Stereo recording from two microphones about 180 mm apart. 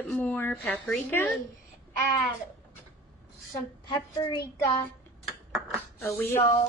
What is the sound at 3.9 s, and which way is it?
Speech, 25° left (ahead or behind).